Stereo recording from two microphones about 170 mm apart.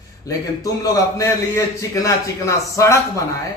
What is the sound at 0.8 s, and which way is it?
A man's voice, 20° left (ahead or behind).